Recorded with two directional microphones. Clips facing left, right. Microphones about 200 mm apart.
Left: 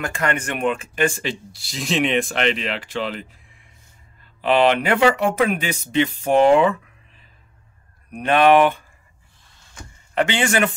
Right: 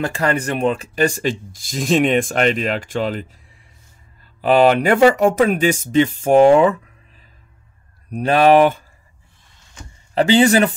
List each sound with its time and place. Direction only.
0.0 s speech: 35° right (ahead or behind)
4.4 s speech: 40° right (ahead or behind)
8.1 s speech: 35° right (ahead or behind)
10.1 s speech: 35° right (ahead or behind)